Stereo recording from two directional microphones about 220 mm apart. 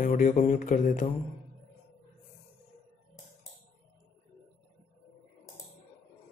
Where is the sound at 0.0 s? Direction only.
35° left (ahead or behind).